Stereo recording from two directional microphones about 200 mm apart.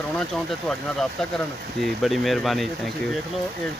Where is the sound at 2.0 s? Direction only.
Centre (ahead or behind).